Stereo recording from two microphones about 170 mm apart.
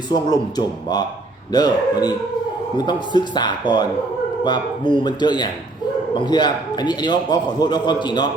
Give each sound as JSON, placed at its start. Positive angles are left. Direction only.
{"t": 0.1, "sound": "a man's voice", "side_deg": 25}